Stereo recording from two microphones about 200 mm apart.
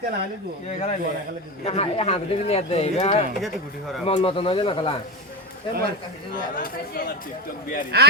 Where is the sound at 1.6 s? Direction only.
30° left (ahead or behind).